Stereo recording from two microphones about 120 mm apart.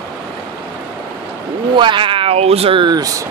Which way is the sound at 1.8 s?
45° right (ahead or behind).